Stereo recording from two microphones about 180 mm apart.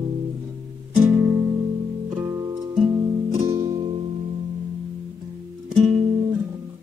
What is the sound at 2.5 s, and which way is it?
Music, 25° right (ahead or behind).